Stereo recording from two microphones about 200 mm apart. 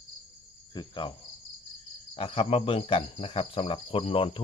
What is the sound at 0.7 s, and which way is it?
Cricket, 25° left (ahead or behind).